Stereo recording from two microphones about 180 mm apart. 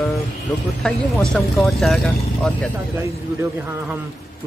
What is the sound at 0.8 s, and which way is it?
Speech, centre (ahead or behind).